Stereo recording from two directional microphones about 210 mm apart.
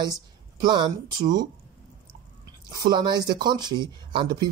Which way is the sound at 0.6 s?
20° right (ahead or behind).